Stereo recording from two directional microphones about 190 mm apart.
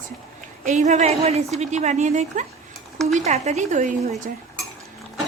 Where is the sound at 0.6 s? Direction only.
40° right (ahead or behind).